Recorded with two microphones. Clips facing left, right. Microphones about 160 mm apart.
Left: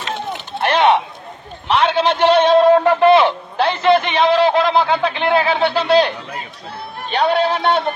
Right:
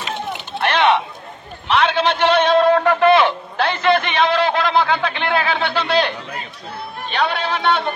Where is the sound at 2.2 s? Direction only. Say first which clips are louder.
Left 4 dB; 30° left (ahead or behind).